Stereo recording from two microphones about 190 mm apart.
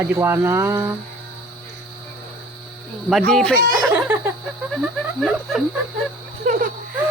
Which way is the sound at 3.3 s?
Centre (ahead or behind).